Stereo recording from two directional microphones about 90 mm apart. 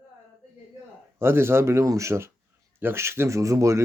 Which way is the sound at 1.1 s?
25° right (ahead or behind).